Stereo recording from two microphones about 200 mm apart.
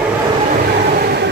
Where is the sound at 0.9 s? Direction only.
55° right (ahead or behind).